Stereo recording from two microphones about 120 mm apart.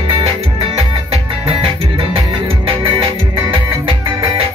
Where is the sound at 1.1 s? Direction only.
50° right (ahead or behind).